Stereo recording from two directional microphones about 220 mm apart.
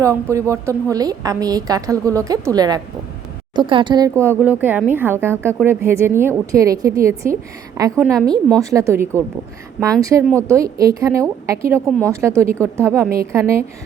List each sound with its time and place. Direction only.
0.0 s speech: 15° right (ahead or behind)
11.9 s a woman's voice: 5° left (ahead or behind)
12.2 s speech: 10° right (ahead or behind)